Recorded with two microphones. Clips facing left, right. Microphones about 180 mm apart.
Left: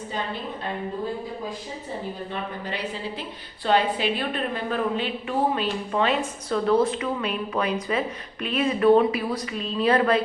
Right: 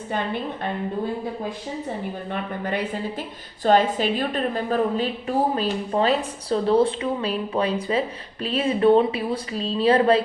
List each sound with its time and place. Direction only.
2.3 s a woman's voice: 50° right (ahead or behind); by 10.2 s 30° right (ahead or behind)